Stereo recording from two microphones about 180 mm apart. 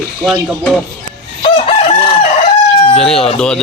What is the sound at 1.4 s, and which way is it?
Chicken, 35° left (ahead or behind).